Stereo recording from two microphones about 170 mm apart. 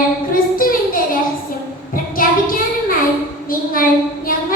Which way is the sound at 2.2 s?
55° left (ahead or behind).